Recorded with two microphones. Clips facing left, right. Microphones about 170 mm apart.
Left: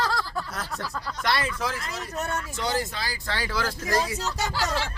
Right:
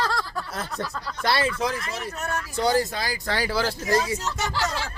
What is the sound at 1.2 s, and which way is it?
Speech, 30° right (ahead or behind).